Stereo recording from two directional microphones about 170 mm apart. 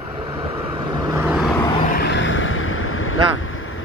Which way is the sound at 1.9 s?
90° left.